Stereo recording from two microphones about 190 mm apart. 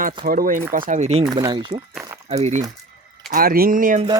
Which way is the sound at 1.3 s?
20° right (ahead or behind).